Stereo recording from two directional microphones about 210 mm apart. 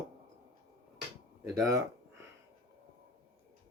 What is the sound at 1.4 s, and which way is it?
Speech, 15° right (ahead or behind).